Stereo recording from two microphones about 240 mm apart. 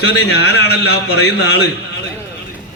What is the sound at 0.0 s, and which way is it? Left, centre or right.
A man's voice, left.